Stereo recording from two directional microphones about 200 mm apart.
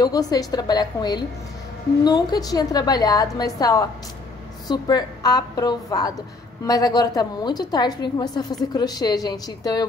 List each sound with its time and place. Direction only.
0.0 s a woman's voice: 20° left (ahead or behind)